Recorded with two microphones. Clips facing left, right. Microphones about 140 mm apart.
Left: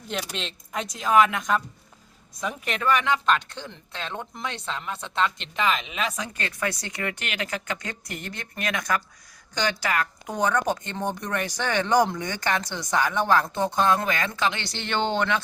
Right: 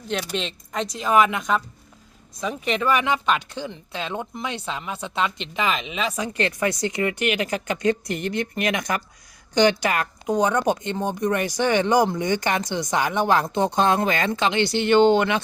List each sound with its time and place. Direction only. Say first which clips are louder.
0.1 s speech: right 5 dB; centre (ahead or behind)
6.6 s speech: right 4 dB; 15° right (ahead or behind)
14.6 s speech: right 11 dB; 10° right (ahead or behind)